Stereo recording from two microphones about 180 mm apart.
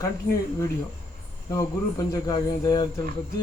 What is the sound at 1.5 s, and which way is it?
Speech, 20° left (ahead or behind).